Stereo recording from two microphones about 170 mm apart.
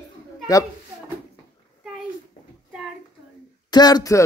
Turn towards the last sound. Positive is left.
turn(degrees=20)  # may be behind; listen again after turning